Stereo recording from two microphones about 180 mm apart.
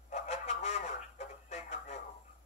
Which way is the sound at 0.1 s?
40° left (ahead or behind).